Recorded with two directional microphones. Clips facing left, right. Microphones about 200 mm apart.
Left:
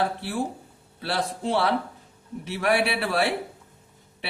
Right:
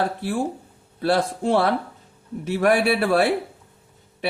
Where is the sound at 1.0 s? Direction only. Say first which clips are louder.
Right 7 dB; 50° right (ahead or behind).